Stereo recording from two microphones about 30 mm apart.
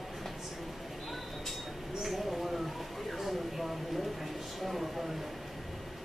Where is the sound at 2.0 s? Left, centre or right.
Centre.